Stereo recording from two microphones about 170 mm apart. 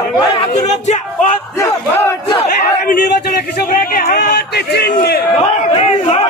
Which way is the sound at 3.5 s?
55° left (ahead or behind).